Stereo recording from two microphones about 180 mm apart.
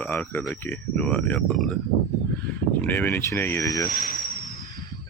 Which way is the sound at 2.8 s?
10° left (ahead or behind).